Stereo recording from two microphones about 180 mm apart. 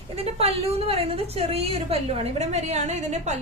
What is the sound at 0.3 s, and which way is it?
A woman's voice, 35° right (ahead or behind).